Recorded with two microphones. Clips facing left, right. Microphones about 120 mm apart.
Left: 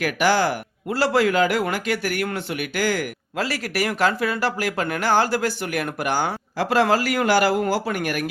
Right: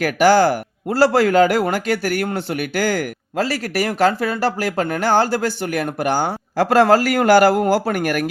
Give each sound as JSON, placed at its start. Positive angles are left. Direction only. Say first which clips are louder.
{"t": 0.0, "sound": "speech", "louder": "right 6 dB", "side_deg": -40}
{"t": 6.6, "sound": "a man's voice", "louder": "right 6 dB", "side_deg": -45}